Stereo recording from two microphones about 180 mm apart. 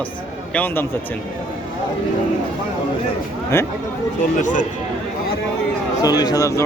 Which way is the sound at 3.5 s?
15° left (ahead or behind).